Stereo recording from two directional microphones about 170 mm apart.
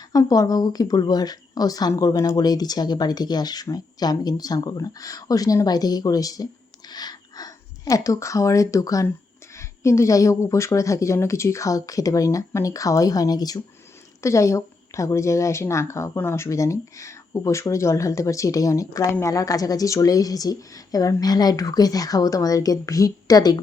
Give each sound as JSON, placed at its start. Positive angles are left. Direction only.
{"t": 0.1, "sound": "a woman's voice", "side_deg": 20}